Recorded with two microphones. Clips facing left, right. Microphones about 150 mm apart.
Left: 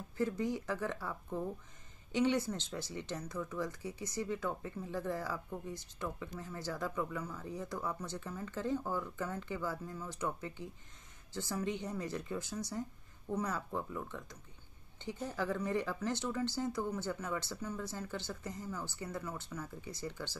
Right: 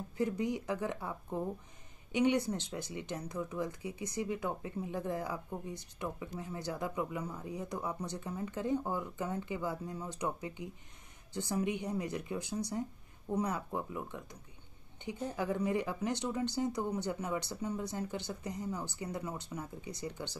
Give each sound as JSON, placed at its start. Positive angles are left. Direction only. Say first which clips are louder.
{"t": 0.2, "sound": "speech", "louder": "right 1 dB", "side_deg": -20}